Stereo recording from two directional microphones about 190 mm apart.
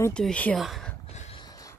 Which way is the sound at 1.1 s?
35° left (ahead or behind).